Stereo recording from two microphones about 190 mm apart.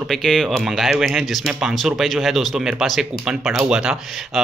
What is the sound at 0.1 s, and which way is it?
Speech, centre (ahead or behind).